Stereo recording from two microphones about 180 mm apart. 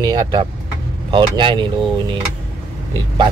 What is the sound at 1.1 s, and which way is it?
Speech, 25° right (ahead or behind).